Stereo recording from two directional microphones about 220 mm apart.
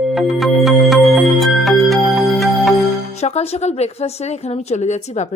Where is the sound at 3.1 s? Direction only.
30° left (ahead or behind).